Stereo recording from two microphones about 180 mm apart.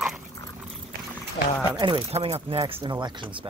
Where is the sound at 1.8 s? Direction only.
30° right (ahead or behind).